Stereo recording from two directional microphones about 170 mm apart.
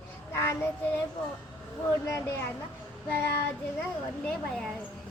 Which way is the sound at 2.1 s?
15° left (ahead or behind).